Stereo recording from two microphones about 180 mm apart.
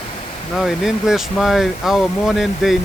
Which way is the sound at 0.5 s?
Centre (ahead or behind).